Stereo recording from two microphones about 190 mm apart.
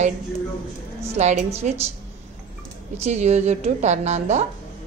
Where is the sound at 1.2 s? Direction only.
35° right (ahead or behind).